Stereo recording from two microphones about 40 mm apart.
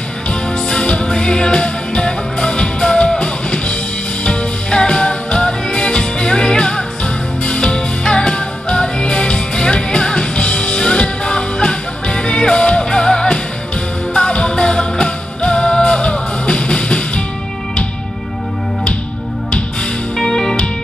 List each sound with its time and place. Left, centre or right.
0.3 s music: left
20.2 s music: centre